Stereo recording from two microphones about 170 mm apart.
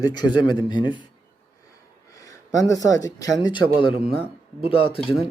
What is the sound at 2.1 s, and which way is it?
Speech, 20° left (ahead or behind).